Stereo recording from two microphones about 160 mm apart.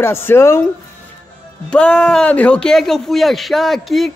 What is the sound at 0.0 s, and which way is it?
Speech, 15° left (ahead or behind).